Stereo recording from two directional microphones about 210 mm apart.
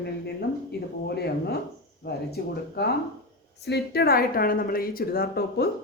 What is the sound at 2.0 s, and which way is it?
A woman's voice, 50° left (ahead or behind).